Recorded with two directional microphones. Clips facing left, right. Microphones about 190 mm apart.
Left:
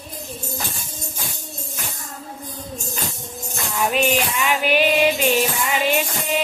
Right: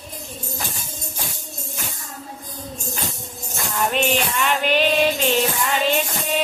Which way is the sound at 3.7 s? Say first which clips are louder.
Left 1 dB; 5° left (ahead or behind).